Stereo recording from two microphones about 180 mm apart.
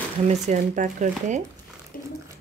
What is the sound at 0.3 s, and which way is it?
Speech, 45° right (ahead or behind).